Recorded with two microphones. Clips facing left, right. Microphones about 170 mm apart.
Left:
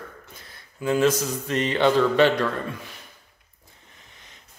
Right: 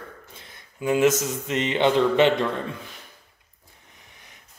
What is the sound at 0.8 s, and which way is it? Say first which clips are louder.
Speech: right 1 dB; 20° right (ahead or behind).